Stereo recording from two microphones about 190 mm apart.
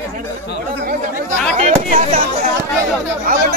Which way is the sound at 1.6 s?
40° right (ahead or behind).